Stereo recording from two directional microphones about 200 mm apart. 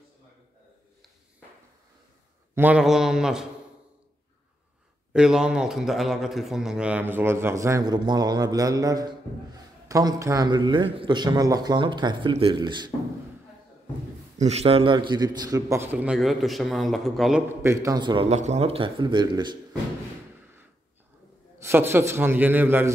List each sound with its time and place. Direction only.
2.5 s mantra: 5° right (ahead or behind)
5.1 s speech: 5° right (ahead or behind); by 12.9 s 20° right (ahead or behind)
14.4 s speech: 30° right (ahead or behind); by 17.4 s centre (ahead or behind)
17.6 s a man's voice: 15° right (ahead or behind)
21.5 s speech: 10° right (ahead or behind)